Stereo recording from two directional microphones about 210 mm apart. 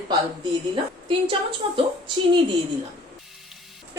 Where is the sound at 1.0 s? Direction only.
25° right (ahead or behind).